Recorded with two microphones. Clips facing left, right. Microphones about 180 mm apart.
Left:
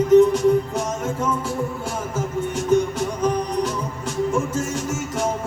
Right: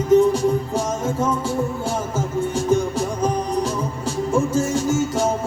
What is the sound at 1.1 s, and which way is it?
Music, 25° right (ahead or behind).